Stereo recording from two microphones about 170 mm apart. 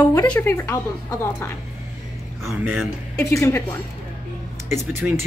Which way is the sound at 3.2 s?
15° left (ahead or behind).